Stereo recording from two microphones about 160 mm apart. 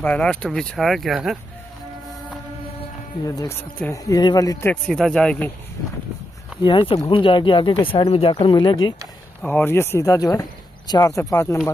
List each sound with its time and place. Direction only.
0.0 s speech: 10° left (ahead or behind)
3.3 s speech: 20° left (ahead or behind)
4.8 s speech: 5° left (ahead or behind)
6.6 s speech: 35° left (ahead or behind)
9.4 s speech: 10° left (ahead or behind)